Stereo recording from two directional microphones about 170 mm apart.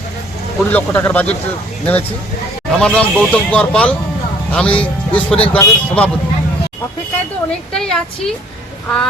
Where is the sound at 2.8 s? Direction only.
5° left (ahead or behind).